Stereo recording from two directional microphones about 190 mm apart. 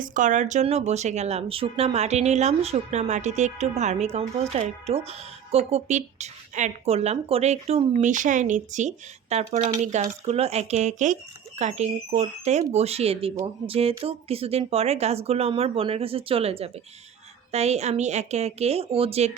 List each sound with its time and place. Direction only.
0.0 s speech: 45° right (ahead or behind)